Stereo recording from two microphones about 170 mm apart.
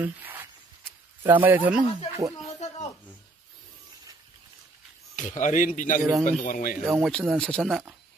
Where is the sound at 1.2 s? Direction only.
10° right (ahead or behind).